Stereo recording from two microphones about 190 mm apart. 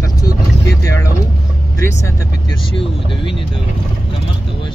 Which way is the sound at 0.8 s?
15° left (ahead or behind).